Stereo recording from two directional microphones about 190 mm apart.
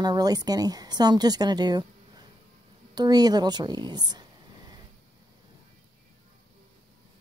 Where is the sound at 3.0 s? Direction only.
20° right (ahead or behind).